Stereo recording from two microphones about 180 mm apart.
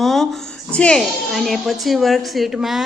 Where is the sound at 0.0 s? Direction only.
Centre (ahead or behind).